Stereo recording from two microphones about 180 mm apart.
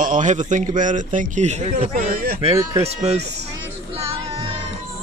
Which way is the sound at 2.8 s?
35° right (ahead or behind).